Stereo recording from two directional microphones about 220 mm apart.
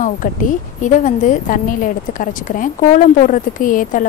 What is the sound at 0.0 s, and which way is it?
A woman's voice, 35° left (ahead or behind).